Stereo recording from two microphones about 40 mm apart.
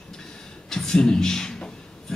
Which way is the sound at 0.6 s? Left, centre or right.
Centre.